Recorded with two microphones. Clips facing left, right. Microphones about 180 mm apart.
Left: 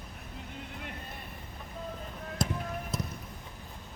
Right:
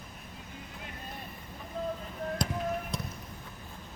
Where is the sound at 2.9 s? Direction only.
5° left (ahead or behind).